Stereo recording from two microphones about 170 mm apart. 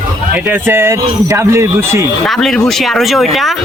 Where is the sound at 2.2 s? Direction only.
Centre (ahead or behind).